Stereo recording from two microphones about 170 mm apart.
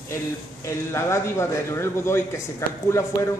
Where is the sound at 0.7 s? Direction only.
15° left (ahead or behind).